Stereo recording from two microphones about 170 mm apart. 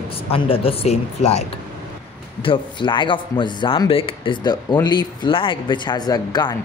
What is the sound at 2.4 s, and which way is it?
A man's voice, 30° left (ahead or behind).